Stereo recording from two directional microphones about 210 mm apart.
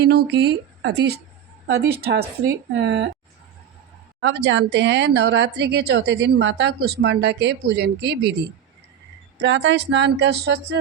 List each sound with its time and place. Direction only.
0.0 s speech: 55° right (ahead or behind)
4.2 s speech: 55° right (ahead or behind)
9.4 s speech: 60° right (ahead or behind)